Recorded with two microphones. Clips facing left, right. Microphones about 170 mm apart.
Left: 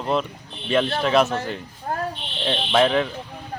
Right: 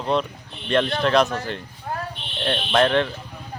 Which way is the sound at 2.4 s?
5° left (ahead or behind).